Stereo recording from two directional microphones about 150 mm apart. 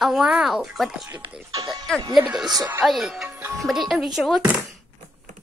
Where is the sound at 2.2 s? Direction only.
5° right (ahead or behind).